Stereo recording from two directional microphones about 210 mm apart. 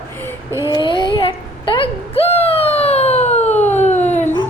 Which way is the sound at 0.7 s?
20° left (ahead or behind).